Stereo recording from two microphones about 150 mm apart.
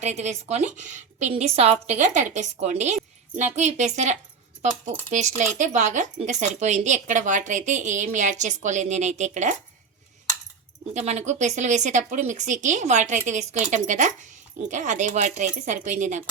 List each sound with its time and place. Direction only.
0.0 s speech: 50° right (ahead or behind)
2.0 s speech: 55° right (ahead or behind)
10.9 s speech: 45° right (ahead or behind)